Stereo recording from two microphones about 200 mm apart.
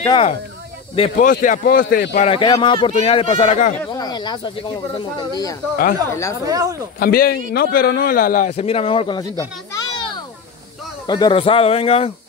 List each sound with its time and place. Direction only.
0.0 s speech: 25° left (ahead or behind)
0.9 s a man's voice: 35° left (ahead or behind)
2.1 s speech: 30° left (ahead or behind)
3.7 s speech: 20° left (ahead or behind)
6.4 s speech: 15° right (ahead or behind)
7.0 s a man's voice: 50° left (ahead or behind); by 9.2 s 25° left (ahead or behind)
9.4 s children playing: 15° left (ahead or behind)
11.1 s speech: 20° left (ahead or behind)